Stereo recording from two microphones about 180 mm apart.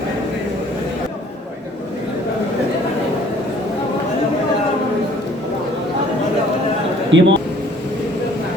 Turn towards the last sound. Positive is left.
turn(degrees=-90)